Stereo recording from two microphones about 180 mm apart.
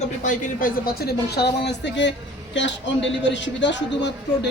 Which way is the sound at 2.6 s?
90° left.